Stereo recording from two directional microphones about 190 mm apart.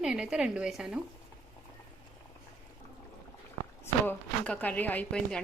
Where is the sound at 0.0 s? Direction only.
5° right (ahead or behind).